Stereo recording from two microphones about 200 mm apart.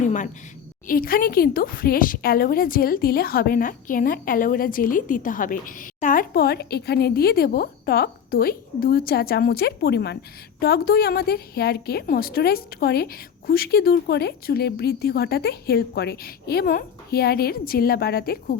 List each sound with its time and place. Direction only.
0.9 s speech: 45° left (ahead or behind)